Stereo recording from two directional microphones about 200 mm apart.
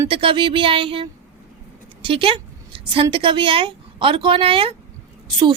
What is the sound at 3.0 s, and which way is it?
A woman's voice, 25° right (ahead or behind).